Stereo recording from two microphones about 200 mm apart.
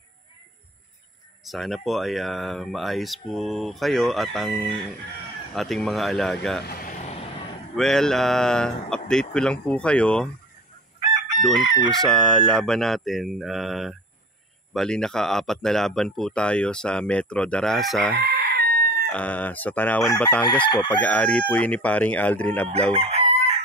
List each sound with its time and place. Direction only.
1.4 s speech: centre (ahead or behind)
6.6 s vehicle: 50° left (ahead or behind)
7.7 s speech: centre (ahead or behind)
11.6 s chicken: 20° right (ahead or behind)
12.0 s speech: centre (ahead or behind)
18.1 s chicken: 50° right (ahead or behind)
19.1 s speech: 5° left (ahead or behind)
20.6 s chicken: 25° left (ahead or behind)
20.9 s speech: 5° left (ahead or behind)
22.9 s chicken: 30° right (ahead or behind)